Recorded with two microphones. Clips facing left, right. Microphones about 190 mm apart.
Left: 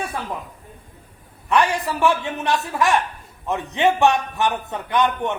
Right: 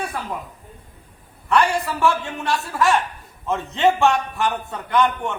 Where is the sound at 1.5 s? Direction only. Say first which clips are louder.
Even; 15° left (ahead or behind).